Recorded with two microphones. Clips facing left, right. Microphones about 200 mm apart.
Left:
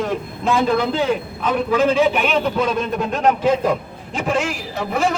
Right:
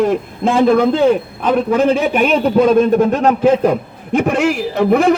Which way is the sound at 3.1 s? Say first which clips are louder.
Right 4 dB; 35° right (ahead or behind).